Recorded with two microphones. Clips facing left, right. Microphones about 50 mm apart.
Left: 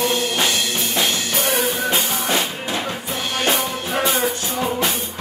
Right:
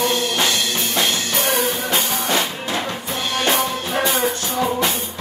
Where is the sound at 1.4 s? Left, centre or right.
Right.